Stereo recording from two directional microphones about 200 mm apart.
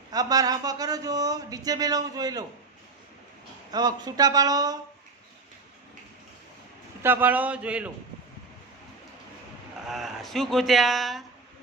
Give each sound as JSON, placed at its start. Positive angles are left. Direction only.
{"t": 0.1, "sound": "speech", "side_deg": -20}
{"t": 3.7, "sound": "speech", "side_deg": -20}
{"t": 7.0, "sound": "speech", "side_deg": -10}
{"t": 9.9, "sound": "speech", "side_deg": 0}